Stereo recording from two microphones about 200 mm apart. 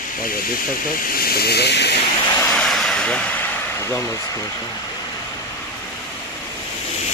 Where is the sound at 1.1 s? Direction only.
50° left (ahead or behind).